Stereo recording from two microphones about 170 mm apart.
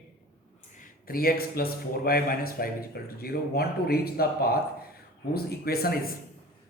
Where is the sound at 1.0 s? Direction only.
60° left (ahead or behind).